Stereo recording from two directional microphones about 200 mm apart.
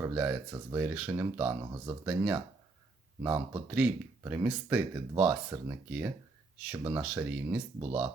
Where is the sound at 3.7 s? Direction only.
5° right (ahead or behind).